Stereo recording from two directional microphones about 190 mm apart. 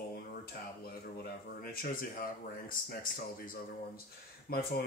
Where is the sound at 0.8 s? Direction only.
55° left (ahead or behind).